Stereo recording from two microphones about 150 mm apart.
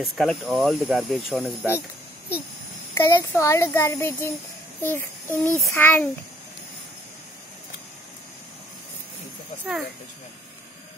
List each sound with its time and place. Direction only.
0.0 s speech: centre (ahead or behind)
2.9 s a child's voice: 15° left (ahead or behind)